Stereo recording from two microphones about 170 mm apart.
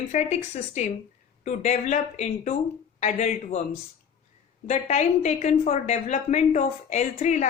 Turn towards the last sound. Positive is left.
turn(degrees=45)  # may be behind; listen again after turning